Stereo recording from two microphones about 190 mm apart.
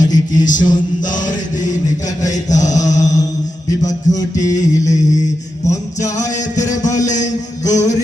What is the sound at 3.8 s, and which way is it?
Music, 20° left (ahead or behind).